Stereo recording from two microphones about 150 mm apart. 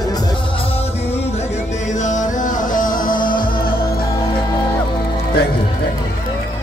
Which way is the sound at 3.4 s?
75° left (ahead or behind).